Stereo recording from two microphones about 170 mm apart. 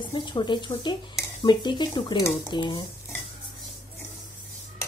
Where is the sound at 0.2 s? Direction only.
25° left (ahead or behind).